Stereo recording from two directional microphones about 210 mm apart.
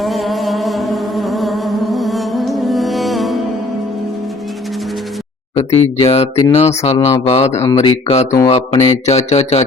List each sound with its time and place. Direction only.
0.0 s music: centre (ahead or behind)
5.5 s speech: 30° left (ahead or behind)